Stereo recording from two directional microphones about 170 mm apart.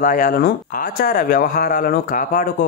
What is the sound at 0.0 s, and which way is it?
Speech, 50° left (ahead or behind).